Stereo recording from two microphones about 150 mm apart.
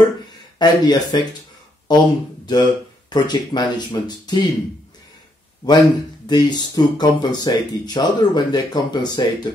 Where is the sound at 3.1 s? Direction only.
30° left (ahead or behind).